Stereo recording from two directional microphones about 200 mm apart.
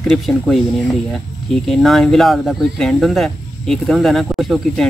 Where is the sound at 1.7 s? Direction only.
Centre (ahead or behind).